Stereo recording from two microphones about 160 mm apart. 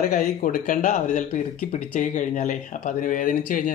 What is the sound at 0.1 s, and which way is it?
A man's voice, 55° left (ahead or behind).